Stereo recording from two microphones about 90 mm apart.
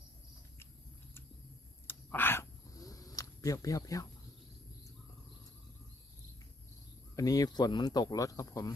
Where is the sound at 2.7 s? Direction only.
40° left (ahead or behind).